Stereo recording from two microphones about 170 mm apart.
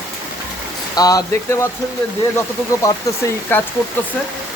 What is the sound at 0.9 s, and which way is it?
Speech, 20° left (ahead or behind).